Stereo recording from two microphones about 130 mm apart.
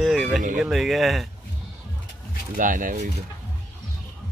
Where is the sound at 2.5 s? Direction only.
90° right.